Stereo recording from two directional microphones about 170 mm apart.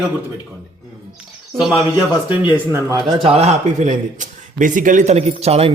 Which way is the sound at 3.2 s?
35° right (ahead or behind).